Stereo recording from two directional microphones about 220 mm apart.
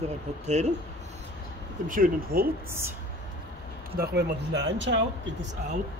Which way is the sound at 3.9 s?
50° right (ahead or behind).